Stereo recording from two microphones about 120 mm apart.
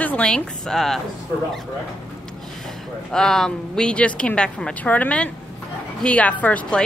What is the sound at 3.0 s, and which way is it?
Speech, 5° left (ahead or behind).